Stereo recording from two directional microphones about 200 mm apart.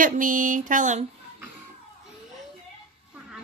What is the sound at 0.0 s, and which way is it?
A woman's voice, 40° right (ahead or behind).